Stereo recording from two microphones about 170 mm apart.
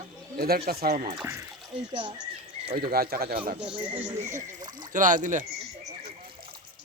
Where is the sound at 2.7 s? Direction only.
60° right (ahead or behind).